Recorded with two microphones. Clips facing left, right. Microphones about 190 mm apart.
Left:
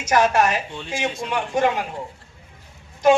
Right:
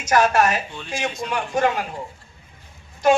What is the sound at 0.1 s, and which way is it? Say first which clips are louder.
Speech: even; 20° left (ahead or behind).